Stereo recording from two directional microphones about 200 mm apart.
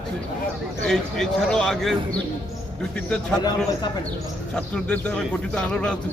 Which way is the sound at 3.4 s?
20° left (ahead or behind).